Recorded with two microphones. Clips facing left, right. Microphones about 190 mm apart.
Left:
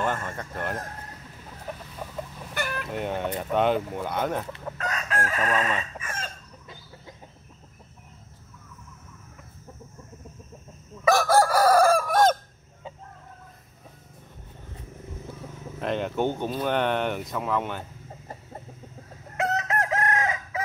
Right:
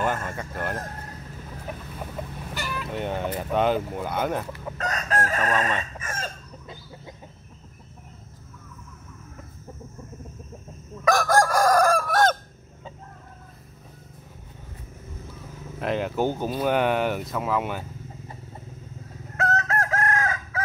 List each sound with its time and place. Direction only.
0.0 s speech: 5° right (ahead or behind)
2.5 s vehicle: 55° left (ahead or behind)
2.9 s speech: centre (ahead or behind)
4.7 s chicken: 40° right (ahead or behind)
11.1 s chicken: 5° left (ahead or behind)
15.8 s speech: 5° right (ahead or behind)
19.5 s chicken: 15° left (ahead or behind)